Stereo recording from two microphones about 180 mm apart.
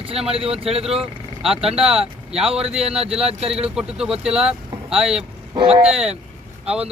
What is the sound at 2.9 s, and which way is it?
Speech, 35° right (ahead or behind).